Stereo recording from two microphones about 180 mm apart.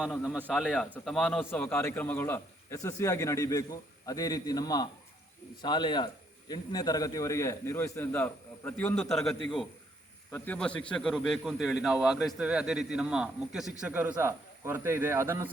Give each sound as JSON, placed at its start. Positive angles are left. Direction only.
{"t": 0.0, "sound": "a man's voice", "side_deg": 0}